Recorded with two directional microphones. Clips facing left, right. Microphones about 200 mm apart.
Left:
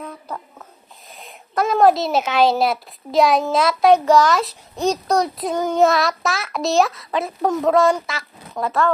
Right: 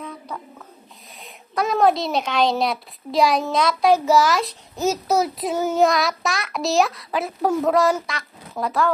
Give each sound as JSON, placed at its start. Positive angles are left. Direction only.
{"t": 1.2, "sound": "a woman's voice", "side_deg": 0}